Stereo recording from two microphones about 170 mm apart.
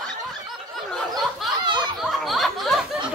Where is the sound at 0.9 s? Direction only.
Centre (ahead or behind).